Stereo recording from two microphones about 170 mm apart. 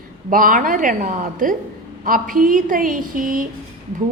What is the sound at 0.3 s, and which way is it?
A woman's voice, 55° right (ahead or behind).